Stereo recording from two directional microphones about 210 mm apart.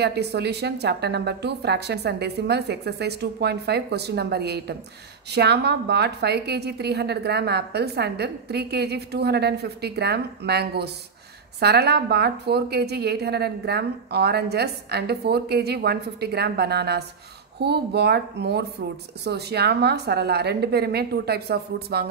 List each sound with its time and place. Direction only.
0.0 s a woman's voice: 50° right (ahead or behind)